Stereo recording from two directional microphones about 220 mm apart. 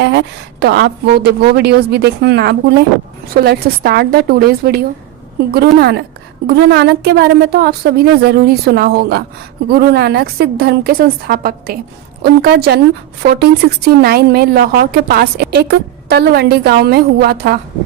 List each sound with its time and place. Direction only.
0.0 s speech: 50° right (ahead or behind)